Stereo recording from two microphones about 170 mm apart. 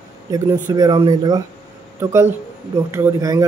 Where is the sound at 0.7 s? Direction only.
20° right (ahead or behind).